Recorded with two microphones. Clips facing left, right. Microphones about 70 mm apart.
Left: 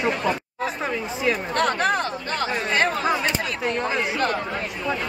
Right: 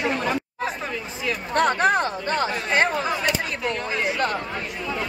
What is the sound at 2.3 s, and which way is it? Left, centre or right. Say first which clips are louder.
Speech: right 1 dB; right.